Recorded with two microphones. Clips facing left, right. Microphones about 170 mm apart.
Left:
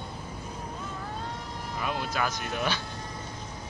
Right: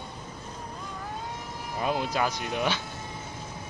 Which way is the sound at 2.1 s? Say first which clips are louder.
Right 2 dB; 20° right (ahead or behind).